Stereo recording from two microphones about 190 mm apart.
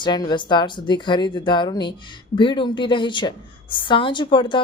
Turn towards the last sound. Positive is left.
turn(degrees=25)  # may be behind; listen again after turning